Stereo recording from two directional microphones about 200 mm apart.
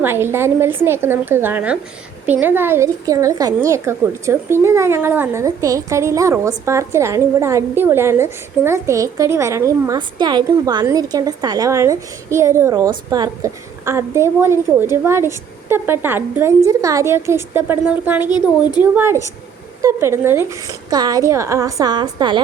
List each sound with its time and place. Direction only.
0.0 s a woman's voice: 10° right (ahead or behind)